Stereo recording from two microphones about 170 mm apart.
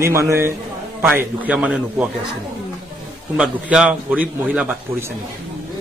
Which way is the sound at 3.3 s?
5° right (ahead or behind).